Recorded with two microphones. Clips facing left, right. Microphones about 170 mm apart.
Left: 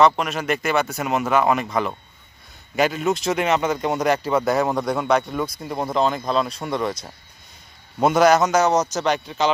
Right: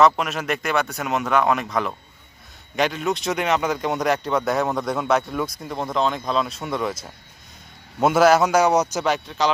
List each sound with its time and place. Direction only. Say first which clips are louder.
0.0 s speech: even; centre (ahead or behind)